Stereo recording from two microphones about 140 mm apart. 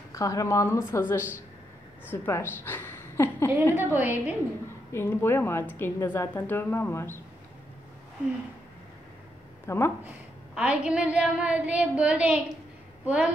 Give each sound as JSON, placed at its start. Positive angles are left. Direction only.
{"t": 0.1, "sound": "a woman's voice", "side_deg": 25}
{"t": 3.7, "sound": "a woman's voice", "side_deg": -15}
{"t": 4.9, "sound": "a woman's voice", "side_deg": 15}
{"t": 9.7, "sound": "a woman's voice", "side_deg": 20}
{"t": 10.5, "sound": "a woman's voice", "side_deg": -10}